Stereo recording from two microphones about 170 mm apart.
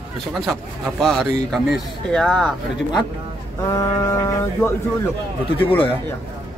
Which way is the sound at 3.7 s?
20° left (ahead or behind).